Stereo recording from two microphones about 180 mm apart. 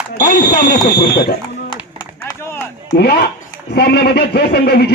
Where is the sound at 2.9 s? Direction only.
60° left (ahead or behind).